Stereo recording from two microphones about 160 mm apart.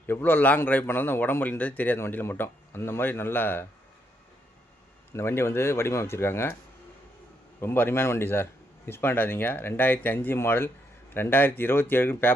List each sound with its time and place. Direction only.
0.1 s a man's voice: 10° left (ahead or behind)
5.1 s a man's voice: 15° left (ahead or behind)
7.6 s a man's voice: 15° left (ahead or behind)